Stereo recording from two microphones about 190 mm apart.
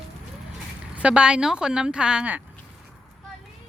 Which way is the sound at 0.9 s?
5° right (ahead or behind).